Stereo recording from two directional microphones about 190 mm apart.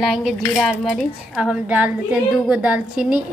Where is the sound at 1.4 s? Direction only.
5° right (ahead or behind).